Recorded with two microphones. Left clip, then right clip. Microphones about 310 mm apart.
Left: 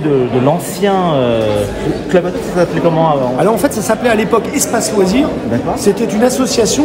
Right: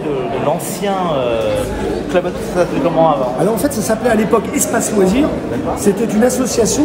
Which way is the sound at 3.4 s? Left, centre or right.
Centre.